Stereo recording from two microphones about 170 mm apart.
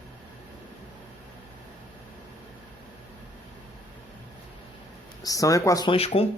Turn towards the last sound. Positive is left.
turn(degrees=35)  # may be behind; listen again after turning